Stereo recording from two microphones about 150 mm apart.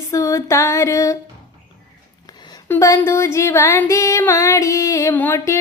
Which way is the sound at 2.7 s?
20° left (ahead or behind).